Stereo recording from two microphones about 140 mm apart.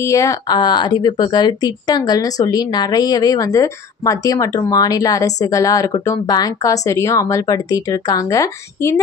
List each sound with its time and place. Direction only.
0.0 s speech: 20° left (ahead or behind)